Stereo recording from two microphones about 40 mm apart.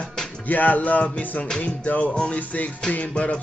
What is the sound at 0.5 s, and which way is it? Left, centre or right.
Music, left.